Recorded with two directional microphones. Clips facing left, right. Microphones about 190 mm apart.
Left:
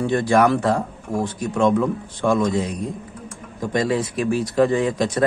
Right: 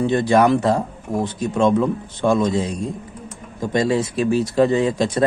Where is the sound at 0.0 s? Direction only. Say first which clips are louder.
Right 2 dB; 20° right (ahead or behind).